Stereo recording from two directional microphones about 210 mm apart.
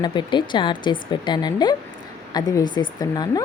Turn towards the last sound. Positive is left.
turn(degrees=20)  # may be behind; listen again after turning